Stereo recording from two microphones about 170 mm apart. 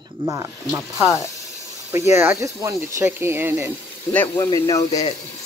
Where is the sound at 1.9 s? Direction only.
15° right (ahead or behind).